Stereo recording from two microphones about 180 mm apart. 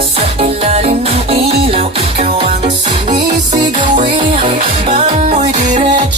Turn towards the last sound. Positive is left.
turn(degrees=-40)  # may be behind; listen again after turning